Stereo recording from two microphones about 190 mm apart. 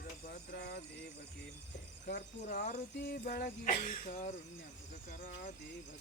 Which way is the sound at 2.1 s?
60° left (ahead or behind).